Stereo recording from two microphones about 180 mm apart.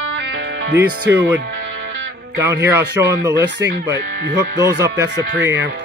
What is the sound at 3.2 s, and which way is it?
Speech, 15° right (ahead or behind).